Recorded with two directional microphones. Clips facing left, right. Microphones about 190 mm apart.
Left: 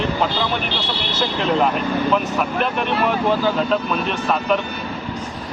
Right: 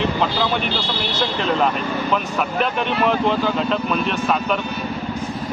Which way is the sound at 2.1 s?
Centre (ahead or behind).